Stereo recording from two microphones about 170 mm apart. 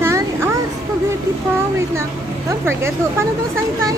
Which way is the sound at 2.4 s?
15° right (ahead or behind).